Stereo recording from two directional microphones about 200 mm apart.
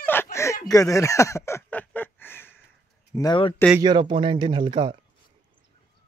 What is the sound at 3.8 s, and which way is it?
A man's voice, 25° right (ahead or behind).